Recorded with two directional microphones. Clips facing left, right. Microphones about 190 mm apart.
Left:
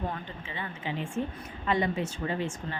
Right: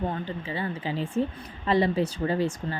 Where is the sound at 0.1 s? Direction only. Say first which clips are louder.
Right 7 dB; 35° right (ahead or behind).